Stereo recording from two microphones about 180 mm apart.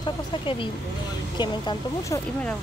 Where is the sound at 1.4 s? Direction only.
20° left (ahead or behind).